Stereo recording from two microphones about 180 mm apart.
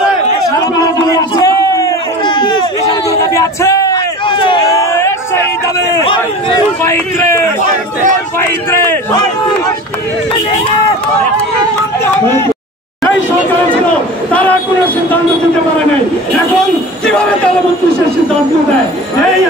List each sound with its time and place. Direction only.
0.7 s a sound: 20° left (ahead or behind)
6.8 s a man's voice: 15° left (ahead or behind)
14.3 s a man's voice: 10° left (ahead or behind)
17.0 s a man's voice: 5° left (ahead or behind)